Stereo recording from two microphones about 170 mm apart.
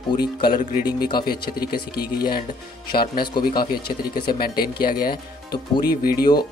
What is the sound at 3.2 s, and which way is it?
Speech, 25° left (ahead or behind).